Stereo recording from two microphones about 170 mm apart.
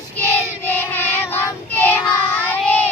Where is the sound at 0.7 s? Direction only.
10° left (ahead or behind).